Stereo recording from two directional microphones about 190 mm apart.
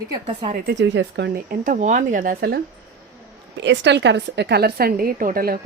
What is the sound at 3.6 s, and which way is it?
A woman's voice, 70° right (ahead or behind).